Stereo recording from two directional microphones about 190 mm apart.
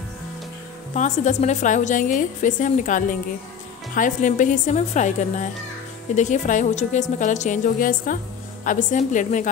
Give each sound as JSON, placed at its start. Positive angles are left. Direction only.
{"t": 0.9, "sound": "a woman's voice", "side_deg": 40}